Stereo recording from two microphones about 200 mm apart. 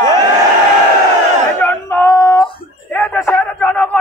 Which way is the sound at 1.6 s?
10° left (ahead or behind).